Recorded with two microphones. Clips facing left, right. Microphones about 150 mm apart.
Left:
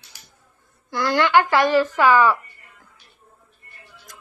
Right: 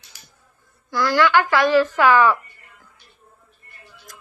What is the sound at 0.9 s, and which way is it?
A woman's voice, 20° left (ahead or behind).